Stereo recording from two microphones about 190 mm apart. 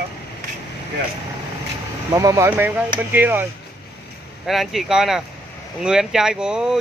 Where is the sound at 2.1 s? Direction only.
20° right (ahead or behind).